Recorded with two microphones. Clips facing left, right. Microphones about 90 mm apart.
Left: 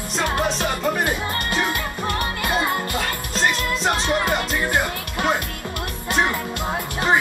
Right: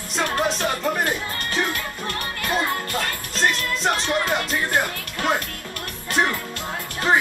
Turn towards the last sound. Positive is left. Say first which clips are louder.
# left 4 dB
turn(degrees=15)  # may be behind; listen again after turning